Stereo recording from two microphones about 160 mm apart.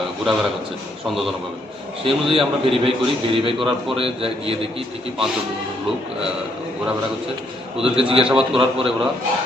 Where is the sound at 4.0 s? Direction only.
35° right (ahead or behind).